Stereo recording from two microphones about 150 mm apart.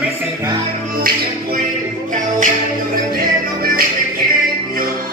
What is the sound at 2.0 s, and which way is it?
Music, 60° right (ahead or behind).